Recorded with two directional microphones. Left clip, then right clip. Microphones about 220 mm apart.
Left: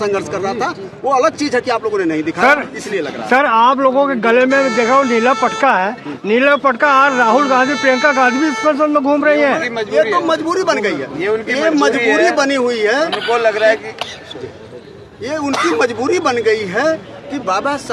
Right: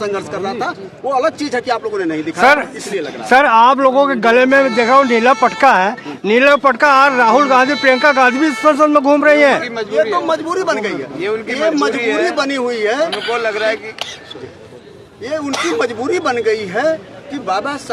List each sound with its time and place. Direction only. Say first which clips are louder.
0.0 s a man's voice: left 2 dB; 5° left (ahead or behind)
2.4 s speech: right 2 dB; 30° right (ahead or behind)
9.6 s a man's voice: left 1 dB; 5° right (ahead or behind)
11.2 s a man's voice: left 1 dB; 10° right (ahead or behind)
12.3 s a man's voice: left 3 dB; centre (ahead or behind)
15.3 s a man's voice: left 2 dB; 5° left (ahead or behind)